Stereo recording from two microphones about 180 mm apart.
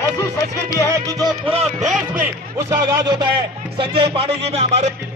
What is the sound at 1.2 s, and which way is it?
Music, 35° right (ahead or behind).